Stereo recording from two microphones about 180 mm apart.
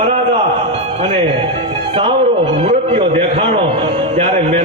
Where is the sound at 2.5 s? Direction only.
30° right (ahead or behind).